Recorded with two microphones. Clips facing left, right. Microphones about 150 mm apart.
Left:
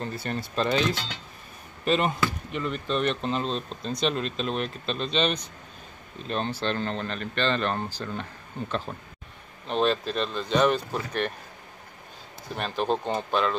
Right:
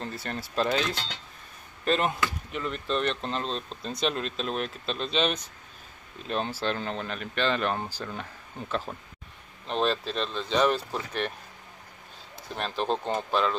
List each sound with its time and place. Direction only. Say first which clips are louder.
0.0 s speech: left 3 dB; centre (ahead or behind)
12.5 s speech: left 2 dB; 5° left (ahead or behind)